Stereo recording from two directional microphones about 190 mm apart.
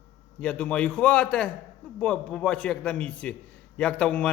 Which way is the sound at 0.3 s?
5° left (ahead or behind).